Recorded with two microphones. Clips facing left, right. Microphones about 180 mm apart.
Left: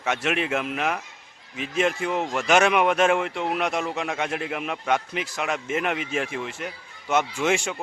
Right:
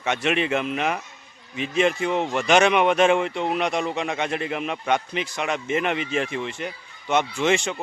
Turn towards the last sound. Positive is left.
turn(degrees=5)  # may be behind; listen again after turning